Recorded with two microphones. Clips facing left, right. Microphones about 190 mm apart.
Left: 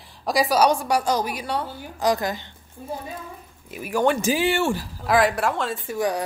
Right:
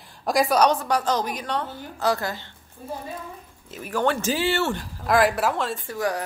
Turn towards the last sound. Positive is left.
turn(degrees=15)  # may be behind; listen again after turning